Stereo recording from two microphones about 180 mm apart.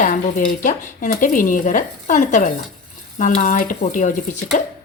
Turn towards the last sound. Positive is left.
turn(degrees=45)  # may be behind; listen again after turning